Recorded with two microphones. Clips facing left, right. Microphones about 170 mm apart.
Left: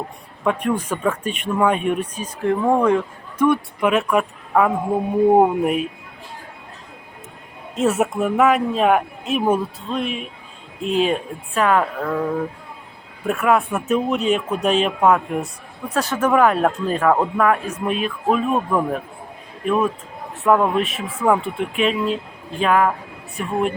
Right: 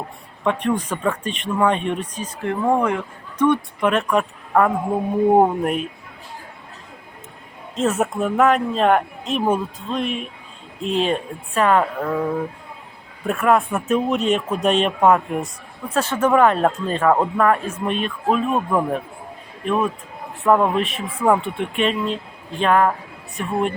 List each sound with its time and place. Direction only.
0.4 s speech: 10° left (ahead or behind)
7.8 s speech: 10° left (ahead or behind)
13.2 s speech: 5° left (ahead or behind)